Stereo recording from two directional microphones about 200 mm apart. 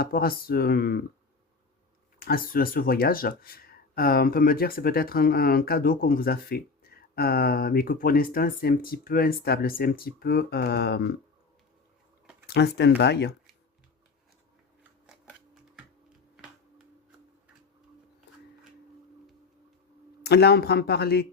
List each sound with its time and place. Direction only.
0.0 s speech: 50° left (ahead or behind)
2.1 s speech: 45° left (ahead or behind)
12.5 s speech: 55° left (ahead or behind)
20.2 s speech: 55° left (ahead or behind)